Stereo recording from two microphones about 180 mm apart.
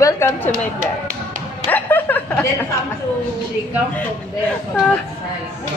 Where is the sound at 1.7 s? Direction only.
10° left (ahead or behind).